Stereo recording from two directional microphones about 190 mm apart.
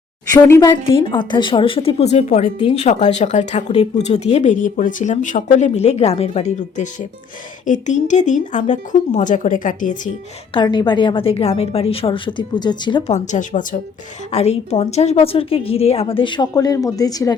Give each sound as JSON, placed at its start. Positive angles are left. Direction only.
{"t": 0.4, "sound": "speech", "side_deg": 15}
{"t": 0.9, "sound": "speech", "side_deg": 25}
{"t": 10.5, "sound": "a woman's voice", "side_deg": 25}